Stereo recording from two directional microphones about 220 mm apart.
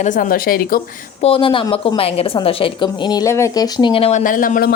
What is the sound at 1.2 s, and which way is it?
A woman's voice, 25° left (ahead or behind).